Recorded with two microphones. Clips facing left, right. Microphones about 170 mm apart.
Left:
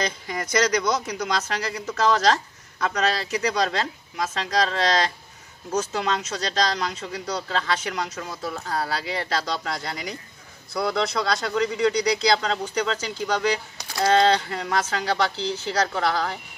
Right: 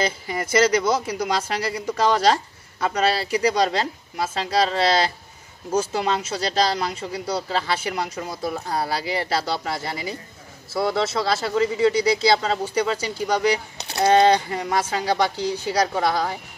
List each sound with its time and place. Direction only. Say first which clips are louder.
0.0 s speech: right 3 dB; 5° right (ahead or behind)
13.8 s a sound: right 3 dB; 25° right (ahead or behind)
14.1 s speech: right 3 dB; 15° right (ahead or behind)